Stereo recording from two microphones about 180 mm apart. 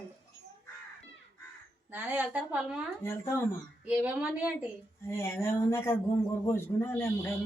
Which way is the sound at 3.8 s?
5° right (ahead or behind).